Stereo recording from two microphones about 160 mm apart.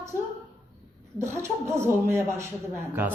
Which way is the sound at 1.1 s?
15° right (ahead or behind).